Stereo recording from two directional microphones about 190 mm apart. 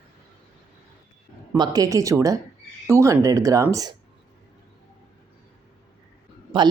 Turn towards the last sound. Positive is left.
turn(degrees=-25)  # may be behind; listen again after turning